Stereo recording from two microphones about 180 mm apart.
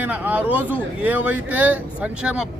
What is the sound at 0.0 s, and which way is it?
Speech, 10° right (ahead or behind).